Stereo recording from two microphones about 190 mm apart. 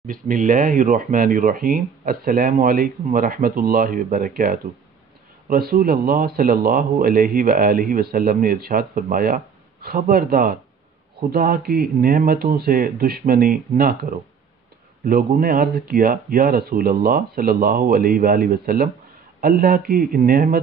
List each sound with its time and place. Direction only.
0.0 s speech: 45° right (ahead or behind)